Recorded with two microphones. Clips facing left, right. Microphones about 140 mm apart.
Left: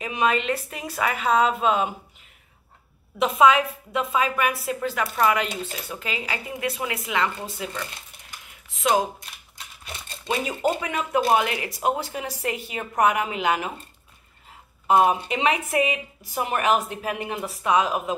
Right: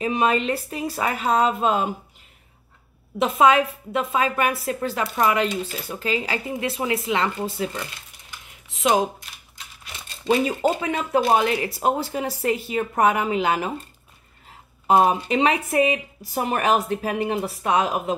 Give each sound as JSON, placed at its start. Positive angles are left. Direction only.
{"t": 0.0, "sound": "speech", "side_deg": -35}
{"t": 3.2, "sound": "a woman's voice", "side_deg": -40}
{"t": 4.5, "sound": "speech", "side_deg": -30}
{"t": 10.8, "sound": "speech", "side_deg": -30}
{"t": 14.9, "sound": "speech", "side_deg": -35}